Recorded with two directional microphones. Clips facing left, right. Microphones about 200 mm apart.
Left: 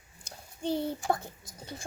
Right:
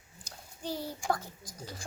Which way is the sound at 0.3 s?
25° left (ahead or behind).